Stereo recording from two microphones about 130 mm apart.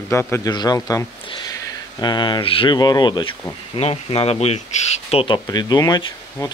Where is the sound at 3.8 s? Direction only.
50° left (ahead or behind).